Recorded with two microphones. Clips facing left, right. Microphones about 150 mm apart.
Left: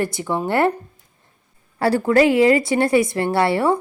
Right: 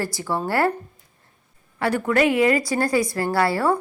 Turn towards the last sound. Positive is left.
turn(degrees=25)  # may be behind; listen again after turning